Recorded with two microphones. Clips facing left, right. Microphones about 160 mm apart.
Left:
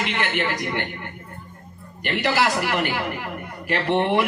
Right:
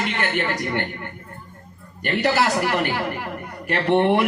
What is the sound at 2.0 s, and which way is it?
Speech, 40° right (ahead or behind).